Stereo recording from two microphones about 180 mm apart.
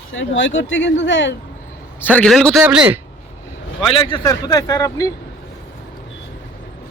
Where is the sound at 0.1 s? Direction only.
90° left.